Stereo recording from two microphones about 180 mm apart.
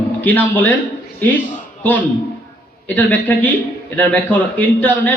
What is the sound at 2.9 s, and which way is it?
A man's voice, 10° left (ahead or behind).